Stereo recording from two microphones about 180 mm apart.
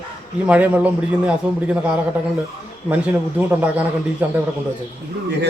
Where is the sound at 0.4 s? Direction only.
10° right (ahead or behind).